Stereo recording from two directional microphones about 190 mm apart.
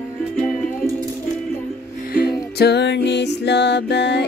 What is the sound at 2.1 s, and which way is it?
Music, 55° left (ahead or behind).